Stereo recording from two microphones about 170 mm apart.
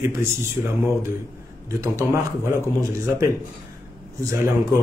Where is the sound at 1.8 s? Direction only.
15° right (ahead or behind).